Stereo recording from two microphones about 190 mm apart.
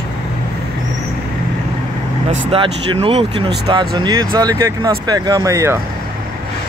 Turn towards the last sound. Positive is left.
turn(degrees=-15)  # may be behind; listen again after turning